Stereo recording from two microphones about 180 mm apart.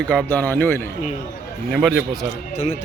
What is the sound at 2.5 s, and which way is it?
Speech, 40° left (ahead or behind).